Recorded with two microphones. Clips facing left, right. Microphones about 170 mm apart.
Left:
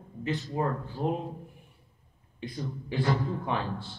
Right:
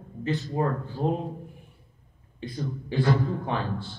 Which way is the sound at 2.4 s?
35° right (ahead or behind).